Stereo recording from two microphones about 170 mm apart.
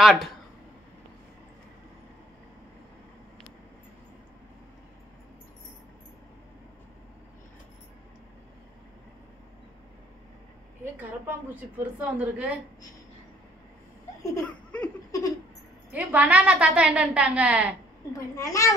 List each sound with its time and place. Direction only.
0.0 s speech: centre (ahead or behind)
11.0 s a woman's voice: 10° right (ahead or behind)
14.4 s laughter: 5° left (ahead or behind)
15.0 s laughter: 20° left (ahead or behind)
15.9 s a woman's voice: 10° right (ahead or behind)
18.1 s a child's voice: 20° left (ahead or behind)